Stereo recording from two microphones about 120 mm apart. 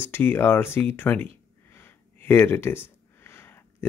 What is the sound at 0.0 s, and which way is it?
Speech, 20° left (ahead or behind).